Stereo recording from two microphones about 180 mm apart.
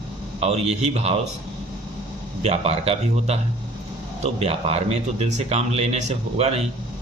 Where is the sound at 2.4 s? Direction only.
35° right (ahead or behind).